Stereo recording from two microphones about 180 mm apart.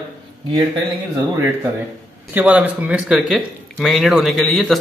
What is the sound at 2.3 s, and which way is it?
Speech, 10° right (ahead or behind).